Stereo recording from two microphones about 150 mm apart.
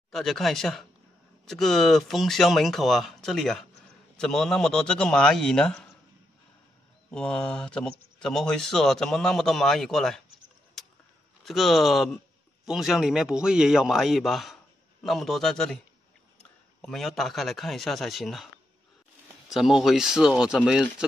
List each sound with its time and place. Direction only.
0.1 s speech: centre (ahead or behind)
7.1 s speech: 5° left (ahead or behind)
10.8 s a sound: centre (ahead or behind)
11.4 s speech: centre (ahead or behind)
16.8 s speech: centre (ahead or behind)
19.5 s speech: centre (ahead or behind)